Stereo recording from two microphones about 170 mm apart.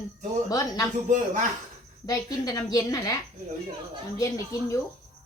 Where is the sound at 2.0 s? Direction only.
20° left (ahead or behind).